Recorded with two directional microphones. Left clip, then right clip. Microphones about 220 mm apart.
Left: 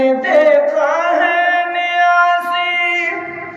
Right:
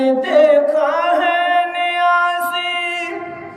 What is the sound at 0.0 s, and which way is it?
Singing, 5° right (ahead or behind).